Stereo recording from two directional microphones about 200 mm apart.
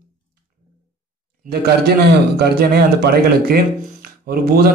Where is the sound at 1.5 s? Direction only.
50° right (ahead or behind).